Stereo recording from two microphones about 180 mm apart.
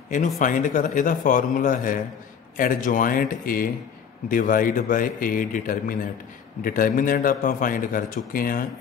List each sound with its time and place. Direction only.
0.4 s a man's voice: 45° left (ahead or behind)